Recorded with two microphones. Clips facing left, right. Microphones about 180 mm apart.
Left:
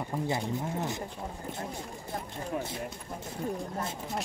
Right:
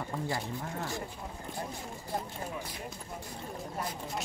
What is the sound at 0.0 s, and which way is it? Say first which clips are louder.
Speech: left 3 dB; 20° left (ahead or behind).